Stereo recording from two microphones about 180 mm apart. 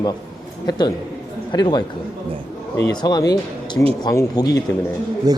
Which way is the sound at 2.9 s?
20° left (ahead or behind).